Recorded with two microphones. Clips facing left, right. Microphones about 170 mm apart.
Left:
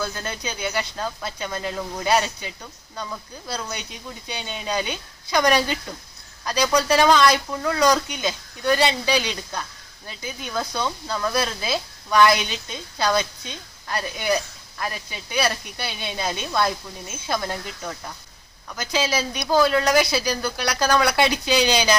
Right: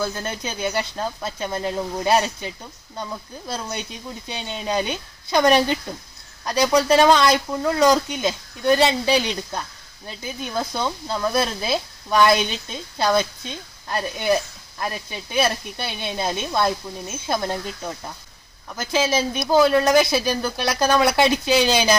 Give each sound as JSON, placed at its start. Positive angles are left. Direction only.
{"t": 0.0, "sound": "speech", "side_deg": -25}